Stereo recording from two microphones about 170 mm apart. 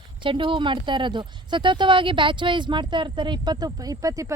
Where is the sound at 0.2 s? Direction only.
30° right (ahead or behind).